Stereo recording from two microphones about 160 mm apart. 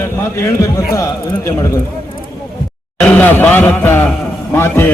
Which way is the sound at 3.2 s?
10° left (ahead or behind).